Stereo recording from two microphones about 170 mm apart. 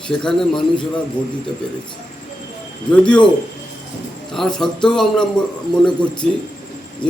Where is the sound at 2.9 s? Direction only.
5° left (ahead or behind).